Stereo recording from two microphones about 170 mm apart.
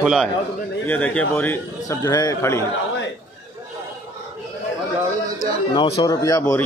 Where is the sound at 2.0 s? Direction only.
20° left (ahead or behind).